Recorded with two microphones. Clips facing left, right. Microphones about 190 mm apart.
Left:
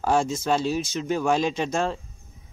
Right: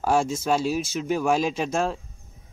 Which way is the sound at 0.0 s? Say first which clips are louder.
Even; 5° right (ahead or behind).